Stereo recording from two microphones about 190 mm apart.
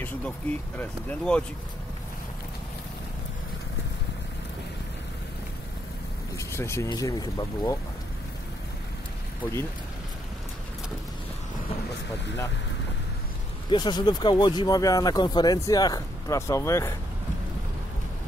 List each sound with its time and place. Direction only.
0.7 s speech: 5° left (ahead or behind)
6.3 s speech: 15° left (ahead or behind)
9.4 s speech: 15° left (ahead or behind)
13.7 s speech: 25° left (ahead or behind)